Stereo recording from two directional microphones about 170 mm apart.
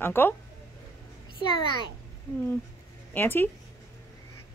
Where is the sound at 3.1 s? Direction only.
10° left (ahead or behind).